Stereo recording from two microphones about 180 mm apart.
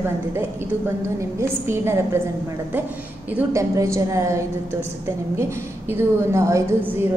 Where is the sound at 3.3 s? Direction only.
15° right (ahead or behind).